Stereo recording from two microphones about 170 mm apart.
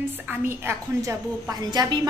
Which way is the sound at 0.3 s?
15° right (ahead or behind).